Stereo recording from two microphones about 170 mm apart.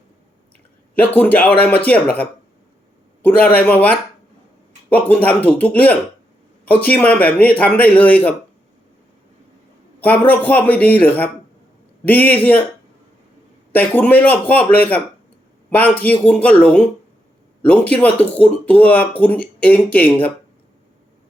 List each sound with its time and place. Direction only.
0.9 s speech: 10° left (ahead or behind)
3.2 s speech: 10° left (ahead or behind)
10.0 s speech: 10° left (ahead or behind)
13.7 s speech: 10° left (ahead or behind)